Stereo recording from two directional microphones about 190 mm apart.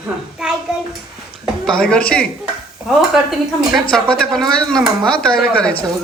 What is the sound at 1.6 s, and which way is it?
Speech, 5° left (ahead or behind).